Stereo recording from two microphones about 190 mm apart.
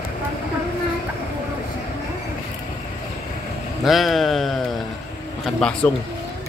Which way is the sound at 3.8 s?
Centre (ahead or behind).